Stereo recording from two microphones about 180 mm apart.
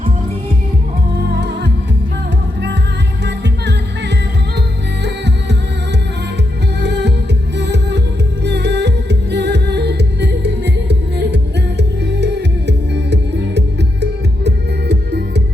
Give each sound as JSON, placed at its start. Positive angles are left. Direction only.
{"t": 1.3, "sound": "music", "side_deg": -70}
{"t": 3.2, "sound": "music", "side_deg": -70}
{"t": 6.8, "sound": "music", "side_deg": -70}